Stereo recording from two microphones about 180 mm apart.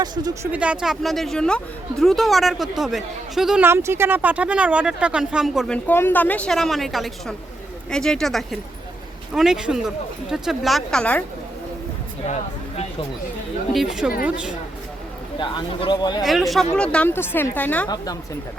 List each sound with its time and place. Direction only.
0.0 s speech: 20° right (ahead or behind)
0.5 s speech: 5° right (ahead or behind)
13.7 s speech: 5° right (ahead or behind)
15.4 s speech: 25° left (ahead or behind)
16.2 s speech: centre (ahead or behind)
17.8 s speech: 20° left (ahead or behind)